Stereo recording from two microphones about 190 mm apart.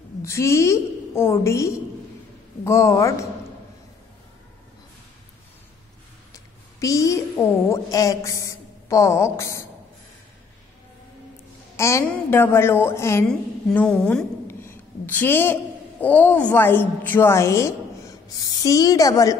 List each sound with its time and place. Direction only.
0.2 s a woman's voice: 15° left (ahead or behind)
6.3 s a woman's voice: 15° left (ahead or behind)
11.7 s a woman's voice: 15° left (ahead or behind)
13.3 s a woman's voice: 5° left (ahead or behind)